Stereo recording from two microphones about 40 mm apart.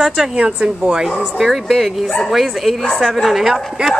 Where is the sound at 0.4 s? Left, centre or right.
Right.